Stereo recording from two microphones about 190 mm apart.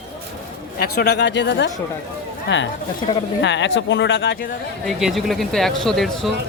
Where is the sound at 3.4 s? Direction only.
70° left (ahead or behind).